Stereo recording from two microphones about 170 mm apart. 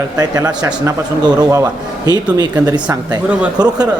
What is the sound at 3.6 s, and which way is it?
Speech, 25° right (ahead or behind).